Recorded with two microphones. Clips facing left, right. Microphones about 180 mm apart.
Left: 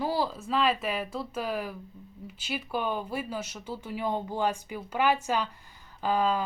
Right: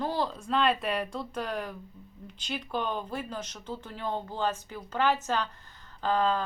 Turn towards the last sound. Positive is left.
turn(degrees=10)  # may be behind; listen again after turning